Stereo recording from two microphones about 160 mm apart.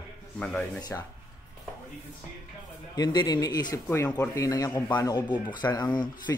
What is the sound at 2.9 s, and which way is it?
Speech, 25° left (ahead or behind).